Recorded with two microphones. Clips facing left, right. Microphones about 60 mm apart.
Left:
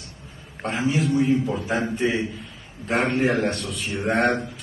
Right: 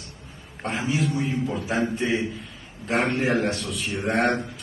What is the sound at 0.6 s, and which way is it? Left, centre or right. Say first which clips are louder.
A man's voice: left 2 dB; centre.